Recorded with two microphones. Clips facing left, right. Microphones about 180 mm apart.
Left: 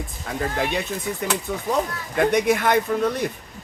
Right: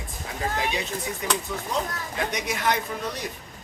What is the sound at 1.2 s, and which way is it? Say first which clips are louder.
Speech: left 5 dB; 55° left (ahead or behind).